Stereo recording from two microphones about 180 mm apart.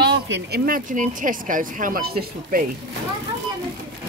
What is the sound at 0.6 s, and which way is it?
Speech, 50° right (ahead or behind).